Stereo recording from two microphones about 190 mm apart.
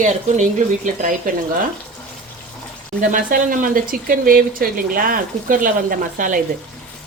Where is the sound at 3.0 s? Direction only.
45° right (ahead or behind).